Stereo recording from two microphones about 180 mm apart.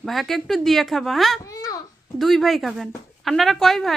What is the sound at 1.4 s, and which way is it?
Babbling, 20° left (ahead or behind).